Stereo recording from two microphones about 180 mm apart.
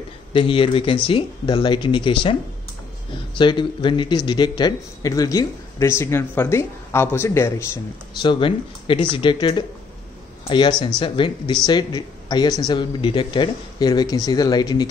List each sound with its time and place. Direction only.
0.3 s a man's voice: 30° left (ahead or behind)
3.3 s a man's voice: 25° left (ahead or behind)
8.2 s a man's voice: 30° left (ahead or behind)